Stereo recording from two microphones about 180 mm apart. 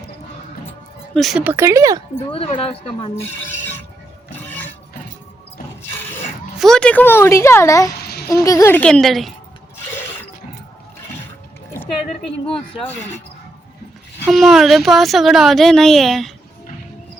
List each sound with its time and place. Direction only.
1.1 s speech: centre (ahead or behind)
1.5 s speech: 15° right (ahead or behind)
2.3 s speech: 30° left (ahead or behind)
4.4 s a sound: 10° left (ahead or behind)
5.9 s a sound: 10° left (ahead or behind)
6.6 s a child's voice: 5° left (ahead or behind)
7.9 s a sound: 65° left (ahead or behind)
8.3 s a child's voice: 20° left (ahead or behind); by 9.3 s centre (ahead or behind)
12.8 s a child's voice: 10° left (ahead or behind)
14.3 s speech: centre (ahead or behind)